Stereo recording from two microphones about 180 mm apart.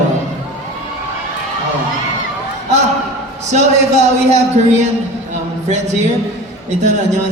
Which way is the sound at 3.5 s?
40° right (ahead or behind).